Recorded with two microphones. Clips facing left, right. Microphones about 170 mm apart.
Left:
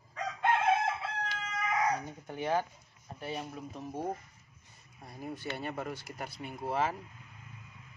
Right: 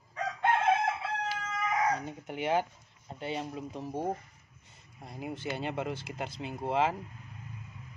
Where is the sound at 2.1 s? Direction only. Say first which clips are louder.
Right 2 dB; 20° right (ahead or behind).